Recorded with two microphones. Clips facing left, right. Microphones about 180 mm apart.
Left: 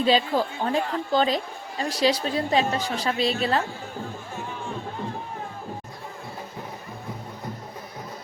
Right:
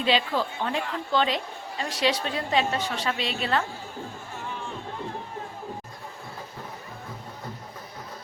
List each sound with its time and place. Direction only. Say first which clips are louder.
0.0 s a woman's voice: left 3 dB; 40° left (ahead or behind)